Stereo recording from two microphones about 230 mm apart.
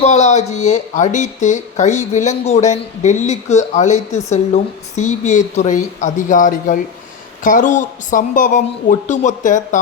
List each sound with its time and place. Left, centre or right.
0.0 s speech: left